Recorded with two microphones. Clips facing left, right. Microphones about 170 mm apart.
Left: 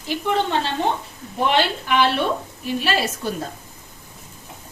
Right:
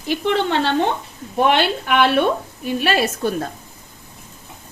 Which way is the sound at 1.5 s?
60° right (ahead or behind).